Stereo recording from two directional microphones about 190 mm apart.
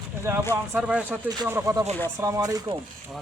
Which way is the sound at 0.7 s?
5° right (ahead or behind).